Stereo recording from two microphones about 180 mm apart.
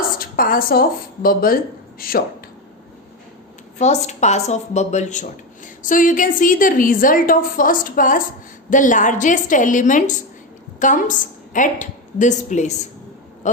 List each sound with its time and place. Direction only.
0.2 s speech: 55° left (ahead or behind)
3.8 s a woman's voice: 40° left (ahead or behind)